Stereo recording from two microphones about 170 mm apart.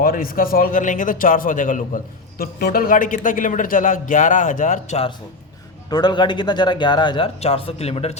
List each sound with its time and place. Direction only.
0.0 s a man's voice: 60° left (ahead or behind)
2.4 s a man's voice: 60° left (ahead or behind); by 5.1 s 40° left (ahead or behind)
5.9 s a man's voice: 25° left (ahead or behind)